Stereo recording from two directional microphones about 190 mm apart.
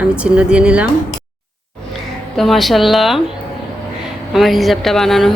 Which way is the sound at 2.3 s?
Centre (ahead or behind).